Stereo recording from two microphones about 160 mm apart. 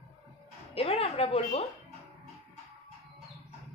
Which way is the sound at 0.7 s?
40° left (ahead or behind).